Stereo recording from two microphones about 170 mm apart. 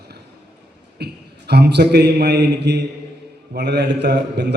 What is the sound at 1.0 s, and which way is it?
A man's voice, 75° right (ahead or behind).